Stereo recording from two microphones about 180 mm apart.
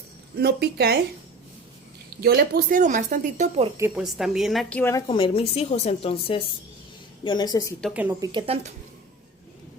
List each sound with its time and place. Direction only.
0.3 s a woman's voice: 65° right (ahead or behind)
2.2 s speech: 60° right (ahead or behind); by 3.7 s 40° right (ahead or behind)
3.8 s a woman's voice: 10° right (ahead or behind)
4.0 s a woman's voice: centre (ahead or behind)
4.8 s a woman's voice: 15° left (ahead or behind)
5.0 s a woman's voice: 30° left (ahead or behind)
8.2 s speech: 25° right (ahead or behind)